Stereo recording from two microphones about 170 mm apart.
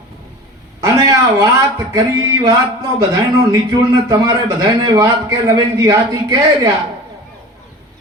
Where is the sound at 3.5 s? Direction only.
20° right (ahead or behind).